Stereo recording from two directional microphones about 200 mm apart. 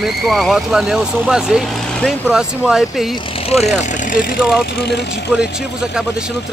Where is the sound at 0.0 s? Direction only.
Centre (ahead or behind).